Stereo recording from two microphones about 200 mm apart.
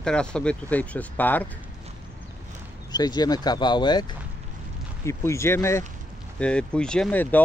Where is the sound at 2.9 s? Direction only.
20° left (ahead or behind).